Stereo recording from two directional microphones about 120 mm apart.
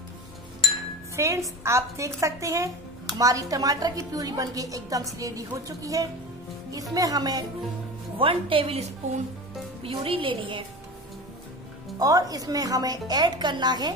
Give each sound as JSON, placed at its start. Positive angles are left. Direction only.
{"t": 1.1, "sound": "a woman's voice", "side_deg": -25}
{"t": 8.2, "sound": "a woman's voice", "side_deg": -45}
{"t": 9.8, "sound": "a woman's voice", "side_deg": -50}
{"t": 12.0, "sound": "a woman's voice", "side_deg": -30}